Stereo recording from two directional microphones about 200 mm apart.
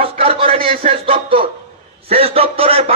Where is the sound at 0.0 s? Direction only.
30° right (ahead or behind).